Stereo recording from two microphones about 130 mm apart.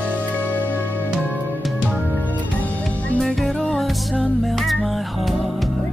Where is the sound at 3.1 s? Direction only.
Centre (ahead or behind).